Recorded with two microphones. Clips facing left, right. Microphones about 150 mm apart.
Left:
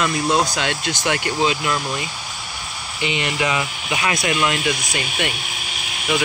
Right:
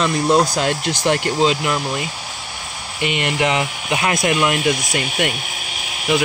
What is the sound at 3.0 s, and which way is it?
Speech, 60° right (ahead or behind).